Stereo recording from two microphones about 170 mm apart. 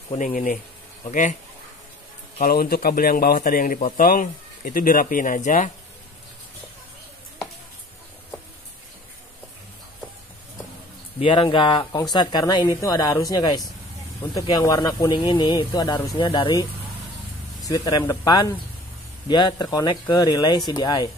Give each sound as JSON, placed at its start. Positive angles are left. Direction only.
{"t": 0.2, "sound": "speech", "side_deg": 50}
{"t": 2.4, "sound": "a man's voice", "side_deg": 60}
{"t": 11.1, "sound": "speech", "side_deg": 30}
{"t": 17.6, "sound": "speech", "side_deg": 20}